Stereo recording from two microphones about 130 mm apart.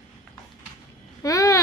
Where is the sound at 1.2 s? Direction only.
25° left (ahead or behind).